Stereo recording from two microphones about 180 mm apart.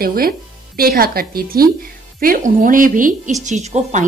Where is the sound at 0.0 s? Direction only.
55° right (ahead or behind).